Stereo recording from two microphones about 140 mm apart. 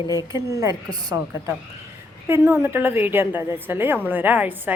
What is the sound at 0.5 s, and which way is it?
Speech, 25° right (ahead or behind).